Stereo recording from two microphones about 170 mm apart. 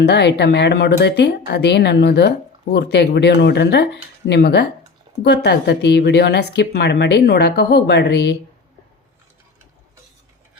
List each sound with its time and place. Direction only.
0.0 s speech: 85° left